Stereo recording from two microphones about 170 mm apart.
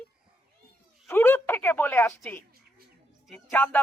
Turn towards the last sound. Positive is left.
turn(degrees=10)  # may be behind; listen again after turning